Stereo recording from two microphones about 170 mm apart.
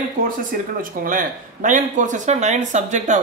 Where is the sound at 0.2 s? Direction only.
55° right (ahead or behind).